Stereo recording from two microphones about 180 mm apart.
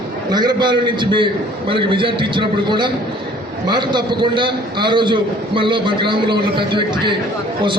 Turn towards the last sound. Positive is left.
turn(degrees=-25)  # may be behind; listen again after turning